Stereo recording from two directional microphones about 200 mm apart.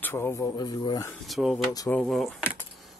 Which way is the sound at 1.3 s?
Centre (ahead or behind).